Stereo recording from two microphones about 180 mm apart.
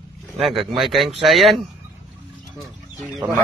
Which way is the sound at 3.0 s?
10° right (ahead or behind).